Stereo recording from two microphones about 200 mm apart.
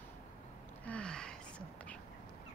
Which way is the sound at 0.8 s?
5° left (ahead or behind).